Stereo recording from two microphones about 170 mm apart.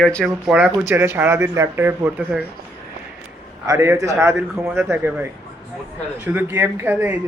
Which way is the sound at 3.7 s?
20° right (ahead or behind).